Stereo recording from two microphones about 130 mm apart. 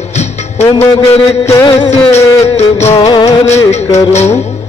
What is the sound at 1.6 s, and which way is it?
Music, 35° left (ahead or behind).